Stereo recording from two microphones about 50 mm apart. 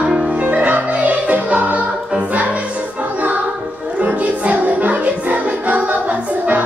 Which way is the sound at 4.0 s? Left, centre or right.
Right.